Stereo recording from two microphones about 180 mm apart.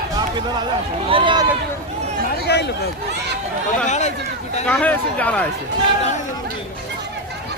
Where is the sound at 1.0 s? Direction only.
30° right (ahead or behind).